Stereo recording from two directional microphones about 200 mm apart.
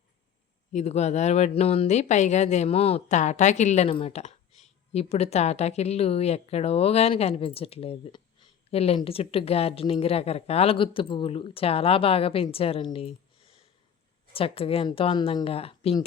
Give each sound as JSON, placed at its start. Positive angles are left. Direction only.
{"t": 0.7, "sound": "speech", "side_deg": 35}